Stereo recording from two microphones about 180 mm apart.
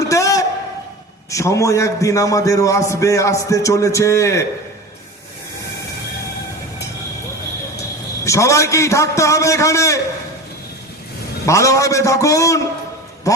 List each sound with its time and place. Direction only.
0.1 s a sound: 20° left (ahead or behind)
1.3 s a man's voice: 15° left (ahead or behind)
8.2 s a man's voice: 15° left (ahead or behind)
11.4 s a man's voice: 15° left (ahead or behind)